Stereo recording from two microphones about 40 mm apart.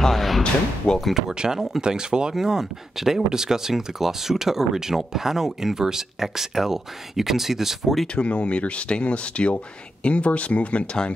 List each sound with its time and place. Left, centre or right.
0.0 s speech: centre
1.1 s speech: centre
8.1 s speech: left